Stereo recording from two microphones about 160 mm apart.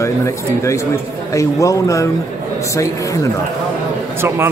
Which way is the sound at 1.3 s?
20° left (ahead or behind).